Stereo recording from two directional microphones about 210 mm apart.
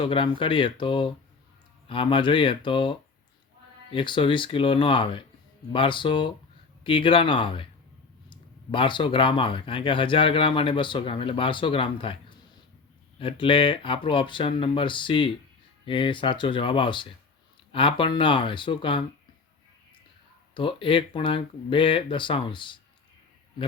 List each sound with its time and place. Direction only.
0.0 s speech: 25° left (ahead or behind)
20.5 s speech: 25° left (ahead or behind)